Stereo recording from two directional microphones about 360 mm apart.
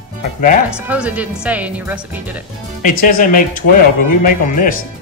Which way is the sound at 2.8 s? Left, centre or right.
Left.